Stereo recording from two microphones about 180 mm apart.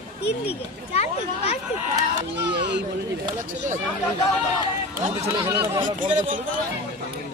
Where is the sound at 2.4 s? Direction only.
75° right (ahead or behind).